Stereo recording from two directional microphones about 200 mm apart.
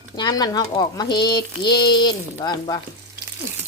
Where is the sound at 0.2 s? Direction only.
20° left (ahead or behind).